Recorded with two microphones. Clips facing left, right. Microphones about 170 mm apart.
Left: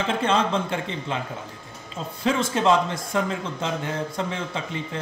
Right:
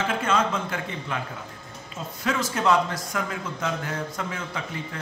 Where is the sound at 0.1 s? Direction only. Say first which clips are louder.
Left 5 dB; 30° left (ahead or behind).